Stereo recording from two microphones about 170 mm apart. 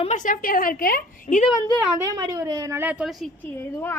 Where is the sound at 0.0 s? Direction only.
45° left (ahead or behind).